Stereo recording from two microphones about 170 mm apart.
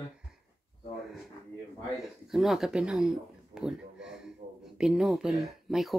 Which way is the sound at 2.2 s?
Centre (ahead or behind).